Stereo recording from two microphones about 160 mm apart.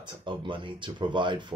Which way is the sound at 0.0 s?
30° right (ahead or behind).